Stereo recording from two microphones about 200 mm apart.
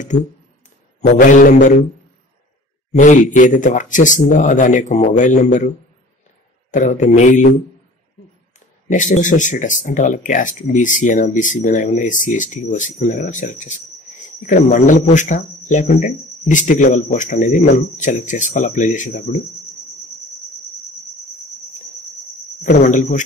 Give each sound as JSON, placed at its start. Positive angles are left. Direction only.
{"t": 1.0, "sound": "speech", "side_deg": 40}
{"t": 2.9, "sound": "speech", "side_deg": 40}
{"t": 6.7, "sound": "speech", "side_deg": 40}
{"t": 8.5, "sound": "speech", "side_deg": 40}
{"t": 22.6, "sound": "speech", "side_deg": 40}